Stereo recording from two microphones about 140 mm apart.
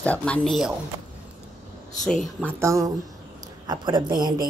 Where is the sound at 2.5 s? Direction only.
20° right (ahead or behind).